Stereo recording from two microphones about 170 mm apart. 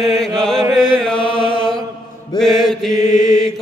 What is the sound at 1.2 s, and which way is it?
Chant, 30° left (ahead or behind).